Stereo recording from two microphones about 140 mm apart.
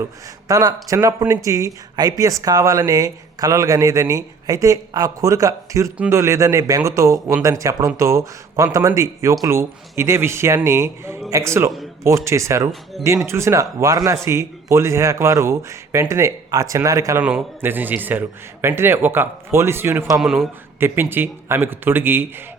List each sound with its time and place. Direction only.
0.4 s speech: 25° right (ahead or behind)
17.2 s a man's voice: 10° right (ahead or behind)
20.2 s a man's voice: centre (ahead or behind)
20.7 s a man's voice: 15° right (ahead or behind)